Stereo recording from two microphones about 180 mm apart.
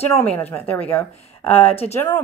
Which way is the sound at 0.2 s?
10° left (ahead or behind).